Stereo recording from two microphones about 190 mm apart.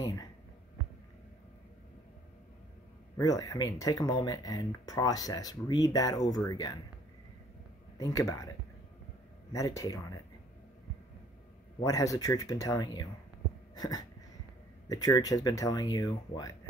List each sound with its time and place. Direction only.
0.0 s a sound: 20° left (ahead or behind)
3.2 s speech: 20° left (ahead or behind)
8.0 s speech: 20° left (ahead or behind)
9.5 s speech: 15° left (ahead or behind)
11.8 s speech: 15° left (ahead or behind)
13.7 s a sound: 20° left (ahead or behind)
14.9 s speech: 20° left (ahead or behind)